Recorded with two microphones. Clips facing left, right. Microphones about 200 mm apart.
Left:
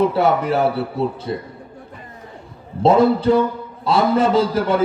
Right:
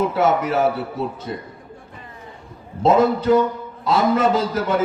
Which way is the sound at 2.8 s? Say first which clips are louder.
Left 2 dB; 30° left (ahead or behind).